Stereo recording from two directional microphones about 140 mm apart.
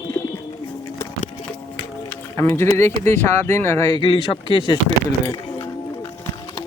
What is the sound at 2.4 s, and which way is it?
Speech, 20° left (ahead or behind).